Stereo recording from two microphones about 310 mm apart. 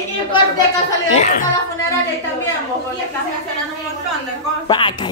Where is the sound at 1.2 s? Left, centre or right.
Left.